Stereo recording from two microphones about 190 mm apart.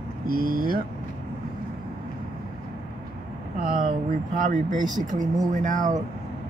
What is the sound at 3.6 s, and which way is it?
Speech, 45° right (ahead or behind).